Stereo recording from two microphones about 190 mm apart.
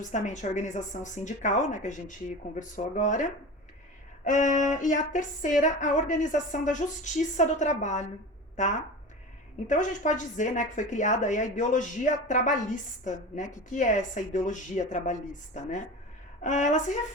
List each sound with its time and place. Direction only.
0.1 s a woman's voice: 40° left (ahead or behind)
9.6 s a woman's voice: 40° left (ahead or behind)